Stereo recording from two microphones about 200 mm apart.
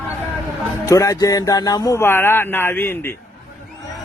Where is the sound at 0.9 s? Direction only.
15° left (ahead or behind).